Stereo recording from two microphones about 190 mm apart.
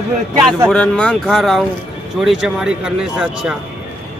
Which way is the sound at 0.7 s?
5° left (ahead or behind).